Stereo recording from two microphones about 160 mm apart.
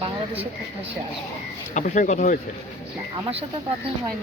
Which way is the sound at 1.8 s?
50° left (ahead or behind).